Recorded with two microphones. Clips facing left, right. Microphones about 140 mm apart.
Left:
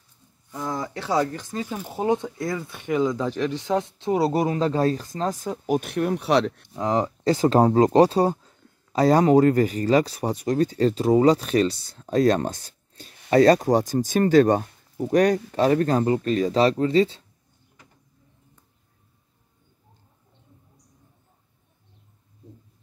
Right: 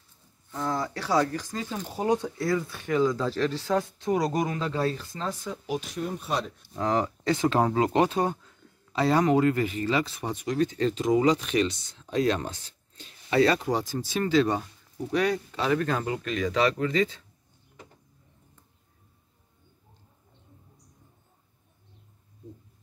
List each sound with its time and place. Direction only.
0.5 s speech: 15° left (ahead or behind); by 6.7 s 70° left (ahead or behind)
6.7 s speech: 20° left (ahead or behind)
7.2 s speech: 35° left (ahead or behind)